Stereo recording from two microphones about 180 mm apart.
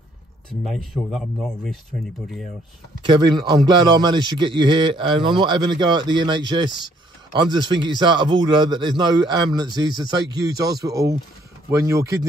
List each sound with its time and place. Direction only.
1.1 s a man's voice: centre (ahead or behind)
3.1 s a man's voice: 25° right (ahead or behind)